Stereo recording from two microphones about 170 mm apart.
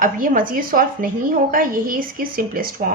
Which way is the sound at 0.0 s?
55° right (ahead or behind).